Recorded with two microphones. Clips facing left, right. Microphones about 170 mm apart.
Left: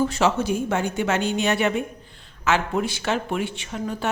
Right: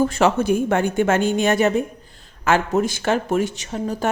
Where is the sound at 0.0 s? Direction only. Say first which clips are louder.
Right 3 dB; 55° right (ahead or behind).